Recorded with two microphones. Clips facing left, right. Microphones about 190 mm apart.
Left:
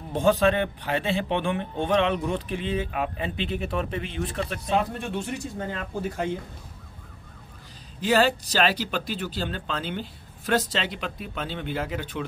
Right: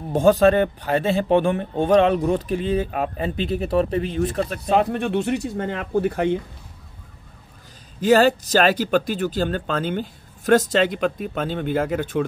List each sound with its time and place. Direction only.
0.1 s speech: 45° right (ahead or behind)
4.7 s speech: 65° right (ahead or behind)
8.0 s speech: 45° right (ahead or behind)